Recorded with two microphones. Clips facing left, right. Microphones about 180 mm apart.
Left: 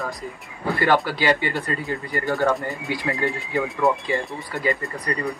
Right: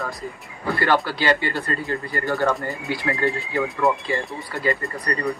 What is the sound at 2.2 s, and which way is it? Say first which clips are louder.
Speech: left 1 dB; centre (ahead or behind).